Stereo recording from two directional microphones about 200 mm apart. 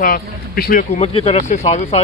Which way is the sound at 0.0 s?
45° left (ahead or behind).